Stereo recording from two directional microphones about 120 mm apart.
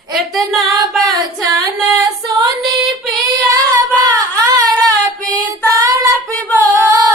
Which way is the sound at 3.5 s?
30° right (ahead or behind).